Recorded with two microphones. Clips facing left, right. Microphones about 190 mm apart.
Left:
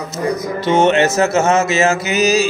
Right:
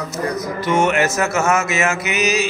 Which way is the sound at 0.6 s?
25° left (ahead or behind).